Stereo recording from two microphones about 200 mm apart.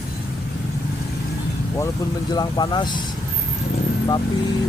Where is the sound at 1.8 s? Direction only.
20° left (ahead or behind).